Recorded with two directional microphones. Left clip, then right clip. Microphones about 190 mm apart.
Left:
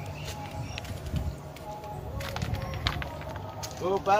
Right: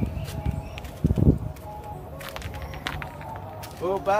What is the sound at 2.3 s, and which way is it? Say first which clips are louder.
Run: left 1 dB; 20° right (ahead or behind).